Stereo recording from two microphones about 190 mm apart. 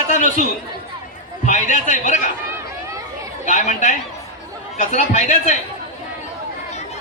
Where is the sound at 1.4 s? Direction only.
40° left (ahead or behind).